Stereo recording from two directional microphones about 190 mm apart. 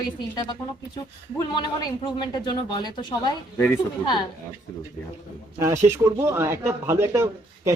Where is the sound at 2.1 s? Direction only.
25° left (ahead or behind).